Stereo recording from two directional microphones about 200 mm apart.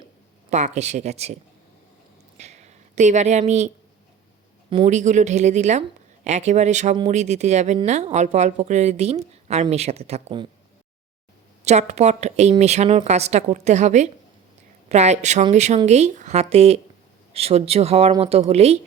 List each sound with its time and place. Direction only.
0.5 s speech: 35° right (ahead or behind)
2.4 s speech: 35° right (ahead or behind)
4.9 s speech: 35° right (ahead or behind)
11.6 s speech: 35° right (ahead or behind)